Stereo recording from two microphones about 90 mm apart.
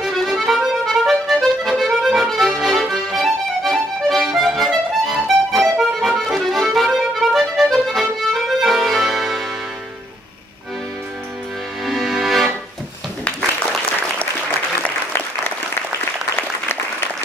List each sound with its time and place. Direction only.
0.0 s accordion: centre (ahead or behind)
11.8 s music: centre (ahead or behind)
14.8 s applause: 20° left (ahead or behind)